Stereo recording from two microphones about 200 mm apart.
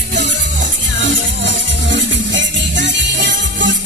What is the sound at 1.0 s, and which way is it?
Music, 65° right (ahead or behind).